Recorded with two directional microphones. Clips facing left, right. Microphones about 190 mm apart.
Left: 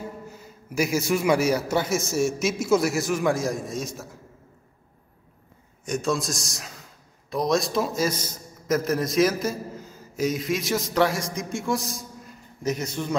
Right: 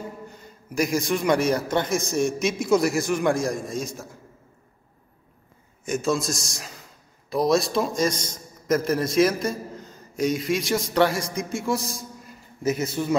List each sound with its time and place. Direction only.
0.3 s a man's voice: 5° left (ahead or behind)
5.9 s a man's voice: centre (ahead or behind)